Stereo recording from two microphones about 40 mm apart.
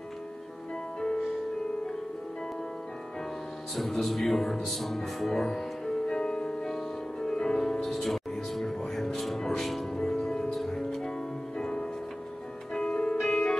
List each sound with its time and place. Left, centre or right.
0.9 s music: centre
3.7 s music: centre